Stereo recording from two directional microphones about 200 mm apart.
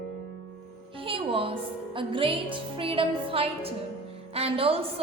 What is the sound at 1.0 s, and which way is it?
Music, 25° right (ahead or behind).